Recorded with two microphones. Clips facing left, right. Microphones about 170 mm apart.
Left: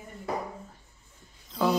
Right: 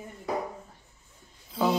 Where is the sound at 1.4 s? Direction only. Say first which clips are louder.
Even; 5° right (ahead or behind).